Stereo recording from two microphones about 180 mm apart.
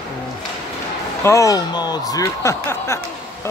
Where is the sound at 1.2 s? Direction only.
15° left (ahead or behind).